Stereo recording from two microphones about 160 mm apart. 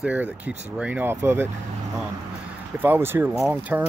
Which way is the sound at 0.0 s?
10° right (ahead or behind).